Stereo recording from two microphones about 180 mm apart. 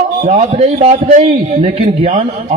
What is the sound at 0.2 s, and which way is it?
A man's voice, 40° right (ahead or behind).